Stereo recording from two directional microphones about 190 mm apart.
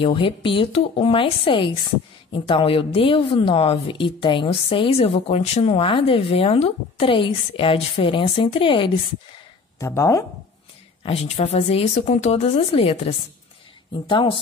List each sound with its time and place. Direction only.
0.0 s a woman's voice: 25° left (ahead or behind)
9.8 s speech: 15° left (ahead or behind)
11.1 s a woman's voice: 35° left (ahead or behind)